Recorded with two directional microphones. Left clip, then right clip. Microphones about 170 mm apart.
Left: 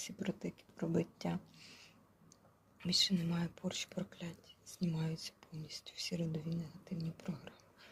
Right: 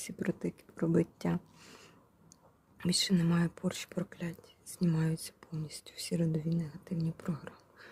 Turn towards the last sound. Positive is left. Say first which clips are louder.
# right 6 dB
turn(degrees=-45)  # may be behind; listen again after turning